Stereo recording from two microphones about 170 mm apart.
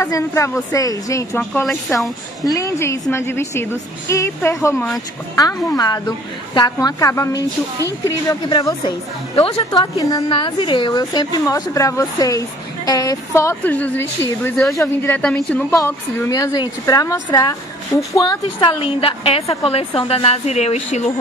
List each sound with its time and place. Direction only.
0.0 s a woman's voice: 15° left (ahead or behind)
9.3 s a woman's voice: 35° left (ahead or behind)
10.0 s a woman's voice: 25° left (ahead or behind); by 21.0 s 40° left (ahead or behind)